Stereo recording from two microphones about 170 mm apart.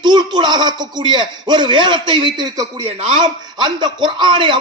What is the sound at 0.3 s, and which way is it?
A man's voice, 25° right (ahead or behind).